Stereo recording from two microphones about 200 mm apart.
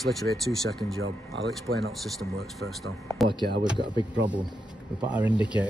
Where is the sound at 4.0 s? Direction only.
25° left (ahead or behind).